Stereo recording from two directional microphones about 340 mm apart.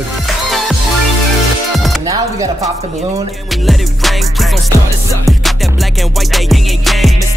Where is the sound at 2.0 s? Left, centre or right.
Centre.